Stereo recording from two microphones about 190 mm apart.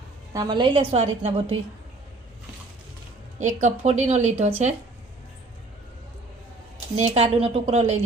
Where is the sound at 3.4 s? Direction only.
40° right (ahead or behind).